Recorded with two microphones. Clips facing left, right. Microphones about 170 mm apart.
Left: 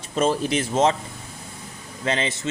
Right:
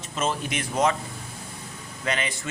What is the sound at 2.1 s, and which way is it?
Speech, 25° left (ahead or behind).